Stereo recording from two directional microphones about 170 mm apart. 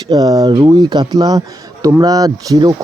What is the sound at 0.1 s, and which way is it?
Speech, 20° right (ahead or behind).